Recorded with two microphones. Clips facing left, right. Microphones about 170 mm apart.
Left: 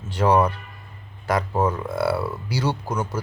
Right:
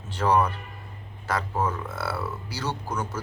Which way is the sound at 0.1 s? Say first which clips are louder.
Left 4 dB; 10° left (ahead or behind).